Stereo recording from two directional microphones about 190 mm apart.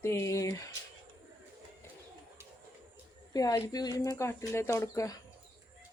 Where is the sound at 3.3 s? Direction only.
20° left (ahead or behind).